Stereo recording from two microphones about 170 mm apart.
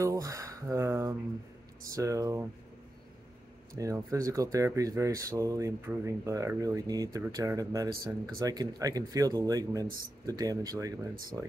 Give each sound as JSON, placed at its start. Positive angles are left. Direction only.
{"t": 0.0, "sound": "speech", "side_deg": -20}
{"t": 3.7, "sound": "speech", "side_deg": -20}